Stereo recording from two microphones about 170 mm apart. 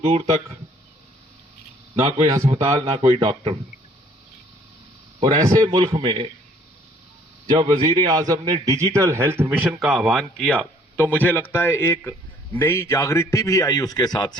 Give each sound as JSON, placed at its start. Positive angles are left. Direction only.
{"t": 0.0, "sound": "speech", "side_deg": -40}
{"t": 2.2, "sound": "a man's voice", "side_deg": -20}
{"t": 2.5, "sound": "speech", "side_deg": -35}
{"t": 3.1, "sound": "a man's voice", "side_deg": -20}
{"t": 5.2, "sound": "a man's voice", "side_deg": -20}
{"t": 7.5, "sound": "a man's voice", "side_deg": -25}